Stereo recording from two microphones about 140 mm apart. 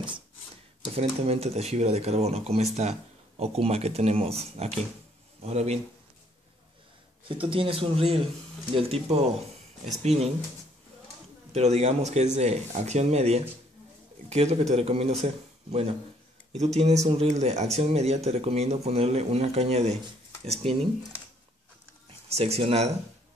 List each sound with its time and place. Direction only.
0.9 s speech: 45° right (ahead or behind)
7.2 s speech: 40° right (ahead or behind)
11.5 s speech: 50° right (ahead or behind)
22.3 s speech: 45° right (ahead or behind)